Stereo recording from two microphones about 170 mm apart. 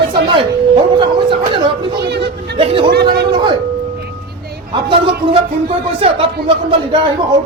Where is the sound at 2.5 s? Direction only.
30° right (ahead or behind).